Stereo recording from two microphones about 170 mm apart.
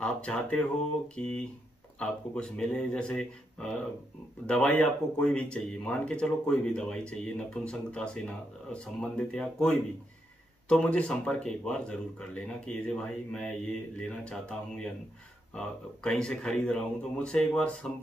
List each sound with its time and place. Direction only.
0.0 s speech: 5° left (ahead or behind)